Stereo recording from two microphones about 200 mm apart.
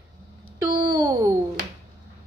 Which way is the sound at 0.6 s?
15° right (ahead or behind).